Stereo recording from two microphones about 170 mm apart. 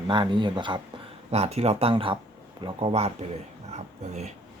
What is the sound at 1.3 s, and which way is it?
Speech, 40° right (ahead or behind).